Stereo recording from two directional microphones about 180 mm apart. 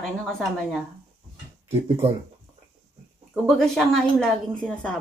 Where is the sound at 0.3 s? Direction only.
Centre (ahead or behind).